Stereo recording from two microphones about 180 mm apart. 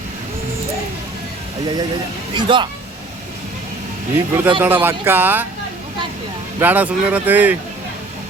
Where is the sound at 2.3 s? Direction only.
25° right (ahead or behind).